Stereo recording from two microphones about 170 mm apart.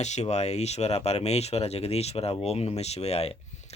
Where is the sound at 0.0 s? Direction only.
40° left (ahead or behind).